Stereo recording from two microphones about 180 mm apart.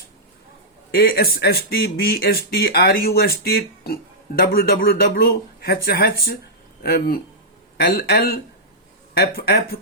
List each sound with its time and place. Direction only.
0.9 s speech: 60° left (ahead or behind)
7.8 s speech: 55° left (ahead or behind)